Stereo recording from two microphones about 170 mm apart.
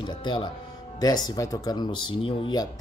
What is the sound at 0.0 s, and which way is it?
Speech, 25° left (ahead or behind).